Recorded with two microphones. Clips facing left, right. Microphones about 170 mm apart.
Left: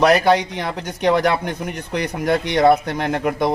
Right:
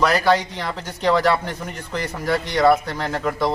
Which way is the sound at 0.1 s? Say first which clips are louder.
Left 3 dB; 20° left (ahead or behind).